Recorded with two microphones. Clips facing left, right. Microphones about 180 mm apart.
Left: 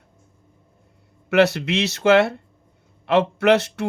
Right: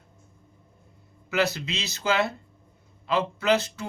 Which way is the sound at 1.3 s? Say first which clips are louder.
Left 9 dB; 70° left (ahead or behind).